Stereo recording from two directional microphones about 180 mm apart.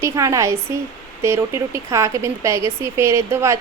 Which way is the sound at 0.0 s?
15° right (ahead or behind).